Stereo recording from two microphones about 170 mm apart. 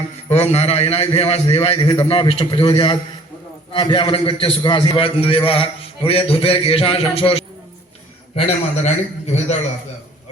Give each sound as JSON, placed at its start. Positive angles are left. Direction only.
{"t": 0.3, "sound": "a man's voice", "side_deg": 40}